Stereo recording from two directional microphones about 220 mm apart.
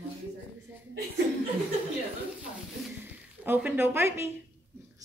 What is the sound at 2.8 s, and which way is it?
Speech, 10° right (ahead or behind).